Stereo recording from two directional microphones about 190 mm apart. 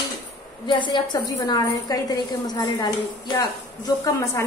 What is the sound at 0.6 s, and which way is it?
A woman's voice, 25° left (ahead or behind).